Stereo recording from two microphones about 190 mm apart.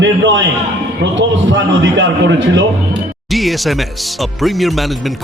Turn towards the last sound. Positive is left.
turn(degrees=0)  # may be behind; listen again after turning